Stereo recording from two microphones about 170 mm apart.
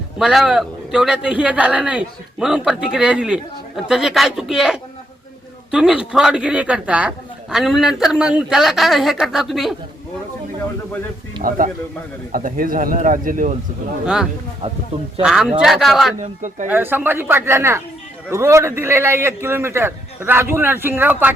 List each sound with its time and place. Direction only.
0.2 s a man's voice: 5° right (ahead or behind)
11.4 s speech: 50° right (ahead or behind)
14.0 s a man's voice: 5° right (ahead or behind)
16.6 s a man's voice: 10° right (ahead or behind)